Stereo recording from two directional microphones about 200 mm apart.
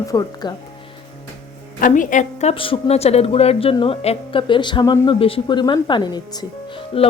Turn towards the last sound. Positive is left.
turn(degrees=25)  # may be behind; listen again after turning